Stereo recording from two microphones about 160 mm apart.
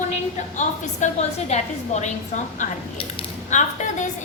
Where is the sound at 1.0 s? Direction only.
50° left (ahead or behind).